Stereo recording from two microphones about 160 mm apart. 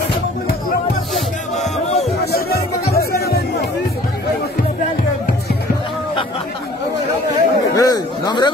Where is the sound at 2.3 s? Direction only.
70° left (ahead or behind).